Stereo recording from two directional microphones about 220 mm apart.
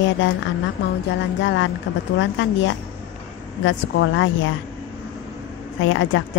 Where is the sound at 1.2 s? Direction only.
55° left (ahead or behind).